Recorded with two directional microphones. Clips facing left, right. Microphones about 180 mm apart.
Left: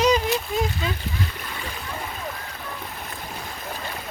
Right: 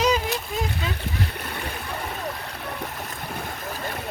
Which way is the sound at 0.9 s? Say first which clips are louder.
Right 1 dB; 65° right (ahead or behind).